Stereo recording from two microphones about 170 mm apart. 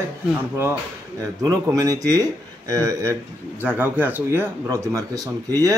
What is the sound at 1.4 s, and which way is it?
A man's voice, 20° right (ahead or behind).